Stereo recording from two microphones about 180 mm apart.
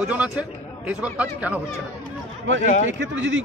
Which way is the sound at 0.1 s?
5° right (ahead or behind).